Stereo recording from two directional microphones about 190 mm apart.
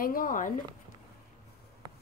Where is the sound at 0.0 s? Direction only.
45° left (ahead or behind).